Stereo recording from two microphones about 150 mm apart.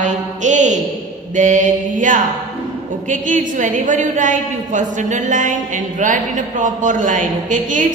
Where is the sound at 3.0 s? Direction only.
60° right (ahead or behind).